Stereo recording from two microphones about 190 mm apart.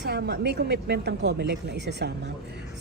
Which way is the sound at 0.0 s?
60° right (ahead or behind).